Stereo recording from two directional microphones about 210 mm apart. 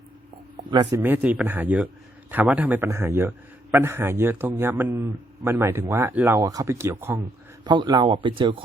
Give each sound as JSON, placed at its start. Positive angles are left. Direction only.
{"t": 0.5, "sound": "a man's voice", "side_deg": -20}
{"t": 7.6, "sound": "speech", "side_deg": -20}